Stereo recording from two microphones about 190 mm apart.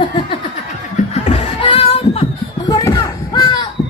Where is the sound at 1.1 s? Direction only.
35° left (ahead or behind).